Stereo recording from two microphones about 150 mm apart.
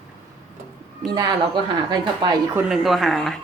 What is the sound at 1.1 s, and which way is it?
Speech, 30° right (ahead or behind).